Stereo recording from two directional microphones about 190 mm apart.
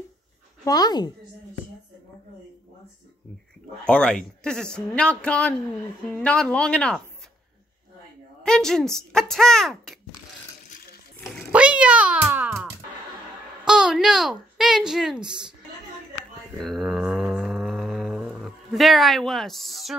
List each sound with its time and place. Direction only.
0.7 s speech: 20° left (ahead or behind)
3.8 s a man's voice: 5° left (ahead or behind)
8.5 s a man's voice: 5° left (ahead or behind)
11.5 s cat: 5° right (ahead or behind)
13.7 s a woman's voice: 5° right (ahead or behind)
16.5 s mantra: centre (ahead or behind)